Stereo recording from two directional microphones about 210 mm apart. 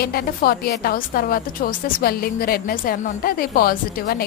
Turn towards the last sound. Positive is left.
turn(degrees=45)  # may be behind; listen again after turning